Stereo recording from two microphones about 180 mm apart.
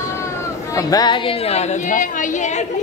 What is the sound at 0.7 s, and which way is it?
A woman's voice, 20° left (ahead or behind).